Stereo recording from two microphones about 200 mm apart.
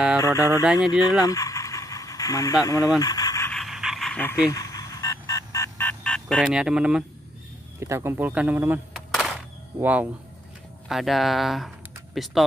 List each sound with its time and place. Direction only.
0.2 s speech: 15° left (ahead or behind)
1.2 s pant: 15° left (ahead or behind)
2.6 s speech: 15° left (ahead or behind)
3.0 s a sound: 20° left (ahead or behind)
3.5 s dog: centre (ahead or behind)
4.5 s music: 15° left (ahead or behind); by 7.1 s 5° right (ahead or behind)
7.8 s speech: 15° right (ahead or behind)